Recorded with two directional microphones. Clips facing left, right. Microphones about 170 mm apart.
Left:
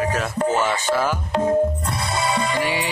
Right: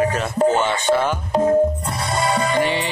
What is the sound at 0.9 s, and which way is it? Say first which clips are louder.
Speech: right 5 dB; 20° right (ahead or behind).